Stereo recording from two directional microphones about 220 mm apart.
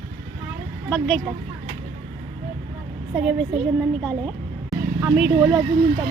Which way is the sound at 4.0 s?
5° left (ahead or behind).